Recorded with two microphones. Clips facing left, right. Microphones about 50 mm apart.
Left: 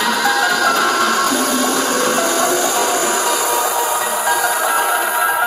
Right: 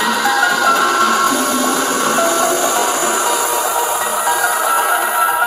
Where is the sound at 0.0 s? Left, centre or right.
Centre.